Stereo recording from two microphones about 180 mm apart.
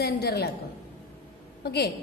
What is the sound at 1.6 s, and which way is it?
Speech, 65° left (ahead or behind).